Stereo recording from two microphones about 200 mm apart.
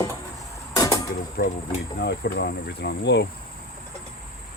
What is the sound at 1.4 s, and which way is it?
Speech, 50° left (ahead or behind).